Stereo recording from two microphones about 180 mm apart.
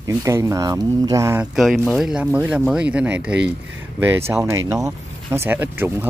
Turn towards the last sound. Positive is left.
turn(degrees=-10)  # may be behind; listen again after turning